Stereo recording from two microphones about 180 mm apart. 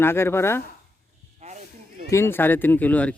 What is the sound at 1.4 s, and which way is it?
Snake, 40° right (ahead or behind).